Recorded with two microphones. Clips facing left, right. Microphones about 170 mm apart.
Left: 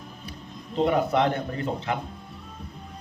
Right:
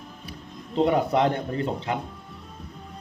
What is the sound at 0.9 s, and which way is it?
A man's voice, 30° right (ahead or behind).